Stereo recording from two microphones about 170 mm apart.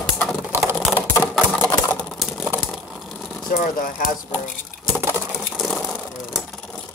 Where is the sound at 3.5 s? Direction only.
55° left (ahead or behind).